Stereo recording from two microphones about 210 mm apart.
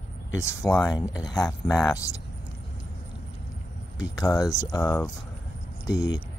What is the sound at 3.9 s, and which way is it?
Speech, 20° left (ahead or behind).